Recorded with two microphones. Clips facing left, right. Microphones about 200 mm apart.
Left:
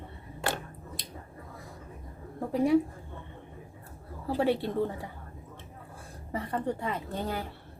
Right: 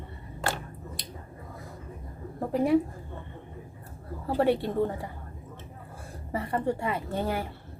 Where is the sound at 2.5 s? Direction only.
Centre (ahead or behind).